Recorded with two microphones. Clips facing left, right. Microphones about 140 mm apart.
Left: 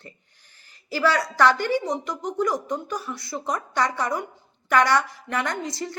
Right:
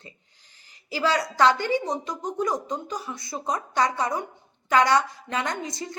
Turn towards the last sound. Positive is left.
turn(degrees=-20)  # may be behind; listen again after turning